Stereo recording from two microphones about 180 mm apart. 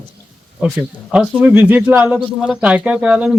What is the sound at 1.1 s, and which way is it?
Speech, 5° right (ahead or behind).